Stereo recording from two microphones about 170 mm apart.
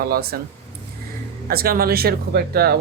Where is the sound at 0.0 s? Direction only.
60° right (ahead or behind).